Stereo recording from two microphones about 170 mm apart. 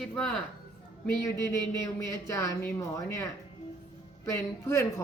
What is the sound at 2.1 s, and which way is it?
Speech, 15° left (ahead or behind).